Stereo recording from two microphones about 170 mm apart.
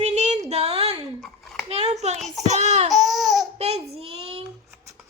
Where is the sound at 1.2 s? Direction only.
Centre (ahead or behind).